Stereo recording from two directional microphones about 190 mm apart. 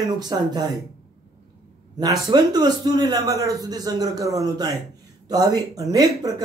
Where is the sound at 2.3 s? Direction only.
20° right (ahead or behind).